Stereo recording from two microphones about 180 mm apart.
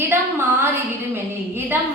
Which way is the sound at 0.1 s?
15° right (ahead or behind).